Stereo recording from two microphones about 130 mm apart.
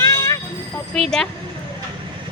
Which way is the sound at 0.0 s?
25° left (ahead or behind).